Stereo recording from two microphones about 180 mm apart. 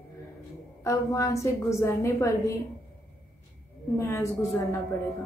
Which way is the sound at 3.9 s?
15° left (ahead or behind).